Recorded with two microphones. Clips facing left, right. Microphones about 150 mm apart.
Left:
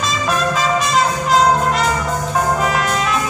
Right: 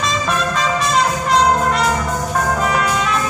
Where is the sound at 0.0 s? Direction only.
Centre (ahead or behind).